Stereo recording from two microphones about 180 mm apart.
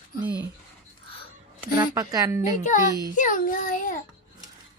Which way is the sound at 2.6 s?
45° left (ahead or behind).